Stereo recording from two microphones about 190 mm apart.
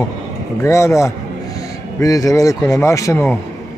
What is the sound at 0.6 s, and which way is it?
Speech, 15° left (ahead or behind).